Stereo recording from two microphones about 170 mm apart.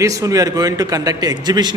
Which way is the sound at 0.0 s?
20° right (ahead or behind).